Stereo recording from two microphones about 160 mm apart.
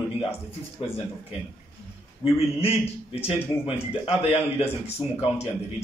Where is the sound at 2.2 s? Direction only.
35° left (ahead or behind).